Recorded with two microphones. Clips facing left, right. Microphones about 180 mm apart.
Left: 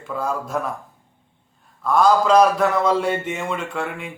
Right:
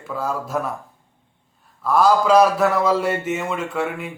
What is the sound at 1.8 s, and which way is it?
A man's voice, 5° right (ahead or behind).